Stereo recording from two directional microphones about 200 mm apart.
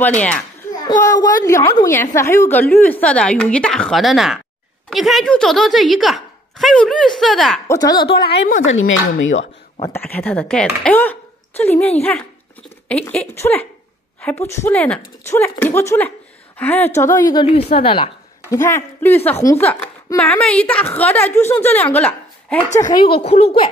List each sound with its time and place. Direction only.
0.8 s a woman's voice: 20° left (ahead or behind); by 7.6 s centre (ahead or behind)
7.6 s a woman's voice: 15° left (ahead or behind)
8.1 s a woman's voice: 55° left (ahead or behind)
8.6 s speech: 75° left (ahead or behind)
9.8 s a woman's voice: 10° left (ahead or behind)
12.8 s a woman's voice: 5° left (ahead or behind); by 18.1 s 30° left (ahead or behind)
18.5 s a woman's voice: 15° left (ahead or behind)
22.8 s a woman's voice: 20° left (ahead or behind)